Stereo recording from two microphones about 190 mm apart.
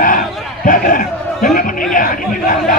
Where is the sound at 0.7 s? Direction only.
45° left (ahead or behind).